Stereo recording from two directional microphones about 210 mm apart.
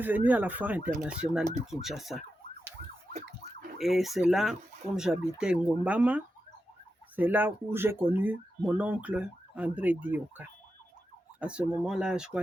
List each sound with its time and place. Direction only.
0.3 s speech: 10° right (ahead or behind)
3.8 s speech: centre (ahead or behind)